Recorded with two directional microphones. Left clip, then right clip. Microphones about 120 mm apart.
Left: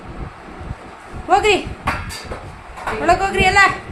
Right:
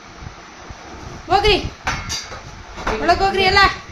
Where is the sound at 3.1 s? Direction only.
10° left (ahead or behind).